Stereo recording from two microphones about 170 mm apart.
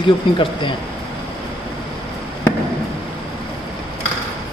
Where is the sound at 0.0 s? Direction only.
30° left (ahead or behind).